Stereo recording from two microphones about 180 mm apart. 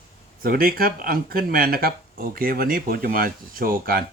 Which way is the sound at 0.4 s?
55° right (ahead or behind).